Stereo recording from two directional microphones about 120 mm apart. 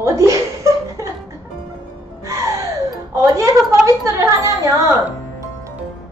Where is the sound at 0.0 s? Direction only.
25° right (ahead or behind).